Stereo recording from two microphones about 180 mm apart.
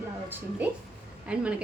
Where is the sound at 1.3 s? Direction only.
5° right (ahead or behind).